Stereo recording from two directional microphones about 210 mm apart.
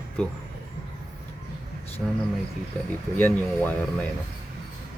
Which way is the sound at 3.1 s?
10° left (ahead or behind).